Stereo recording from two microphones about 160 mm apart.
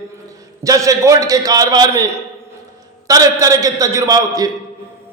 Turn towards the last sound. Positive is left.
turn(degrees=-25)  # may be behind; listen again after turning